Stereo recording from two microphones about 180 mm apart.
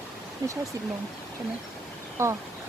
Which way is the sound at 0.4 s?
20° right (ahead or behind).